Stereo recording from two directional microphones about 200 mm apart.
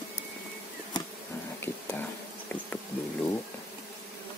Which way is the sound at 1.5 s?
10° left (ahead or behind).